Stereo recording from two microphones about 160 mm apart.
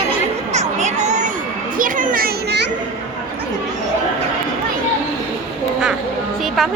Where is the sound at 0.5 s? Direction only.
45° right (ahead or behind).